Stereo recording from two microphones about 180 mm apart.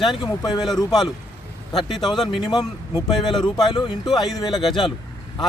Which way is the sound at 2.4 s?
25° left (ahead or behind).